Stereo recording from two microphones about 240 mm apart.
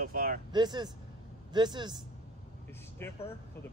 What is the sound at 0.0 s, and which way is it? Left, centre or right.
Vehicle, right.